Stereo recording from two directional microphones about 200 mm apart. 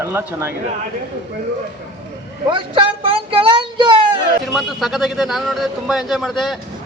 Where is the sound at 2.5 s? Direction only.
25° right (ahead or behind).